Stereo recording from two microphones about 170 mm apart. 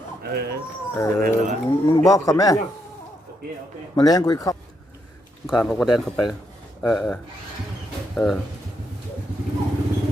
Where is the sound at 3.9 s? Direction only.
20° left (ahead or behind).